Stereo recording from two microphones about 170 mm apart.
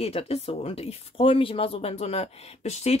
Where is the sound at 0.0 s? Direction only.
35° left (ahead or behind).